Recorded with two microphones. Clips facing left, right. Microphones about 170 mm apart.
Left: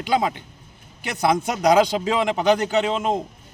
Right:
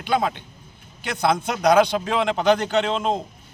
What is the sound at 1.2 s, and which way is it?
Speech, 15° left (ahead or behind).